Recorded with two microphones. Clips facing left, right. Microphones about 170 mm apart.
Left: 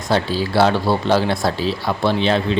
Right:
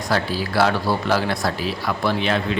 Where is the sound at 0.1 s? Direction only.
25° left (ahead or behind).